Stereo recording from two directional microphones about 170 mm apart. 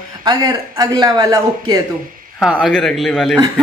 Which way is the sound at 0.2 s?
25° right (ahead or behind).